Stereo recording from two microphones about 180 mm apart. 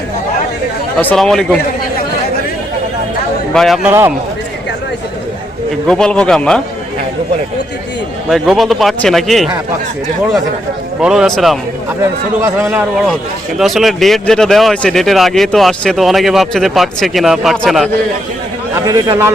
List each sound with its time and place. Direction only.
0.9 s speech: 5° left (ahead or behind)
3.5 s speech: centre (ahead or behind)
3.8 s a man's voice: 15° right (ahead or behind)
5.9 s speech: 5° left (ahead or behind)
8.3 s speech: centre (ahead or behind)
11.0 s speech: 5° right (ahead or behind)
12.6 s speech: 5° right (ahead or behind)
18.9 s a man's voice: 20° right (ahead or behind)